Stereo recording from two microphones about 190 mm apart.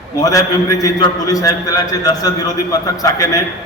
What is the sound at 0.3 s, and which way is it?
A man's voice, 20° left (ahead or behind).